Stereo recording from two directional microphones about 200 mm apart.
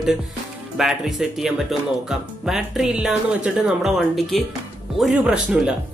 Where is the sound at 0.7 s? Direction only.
Centre (ahead or behind).